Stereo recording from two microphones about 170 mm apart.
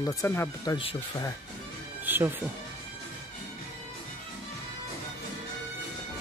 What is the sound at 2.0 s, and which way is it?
Speech, 10° right (ahead or behind).